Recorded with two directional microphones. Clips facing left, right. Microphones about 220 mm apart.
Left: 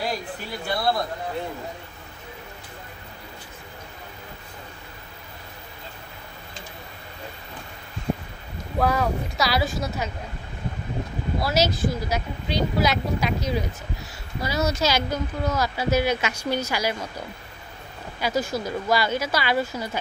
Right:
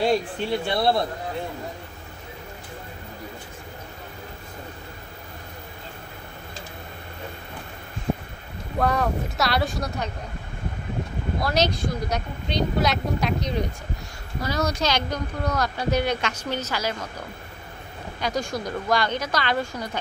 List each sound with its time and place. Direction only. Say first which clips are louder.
0.4 s speech: right 5 dB; 25° right (ahead or behind)
8.7 s speech: even; centre (ahead or behind)
11.4 s speech: left 1 dB; 5° left (ahead or behind)
18.2 s speech: left 2 dB; 5° left (ahead or behind)